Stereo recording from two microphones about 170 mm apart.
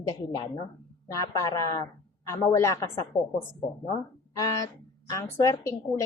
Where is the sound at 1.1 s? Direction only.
20° left (ahead or behind).